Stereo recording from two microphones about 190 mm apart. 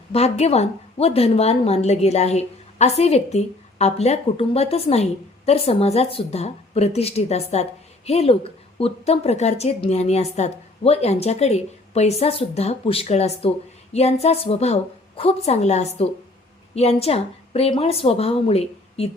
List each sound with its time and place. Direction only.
0.1 s a woman's voice: 30° left (ahead or behind)